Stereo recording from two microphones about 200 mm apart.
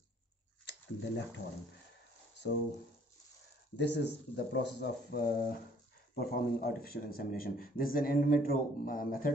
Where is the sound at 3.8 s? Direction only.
60° left (ahead or behind).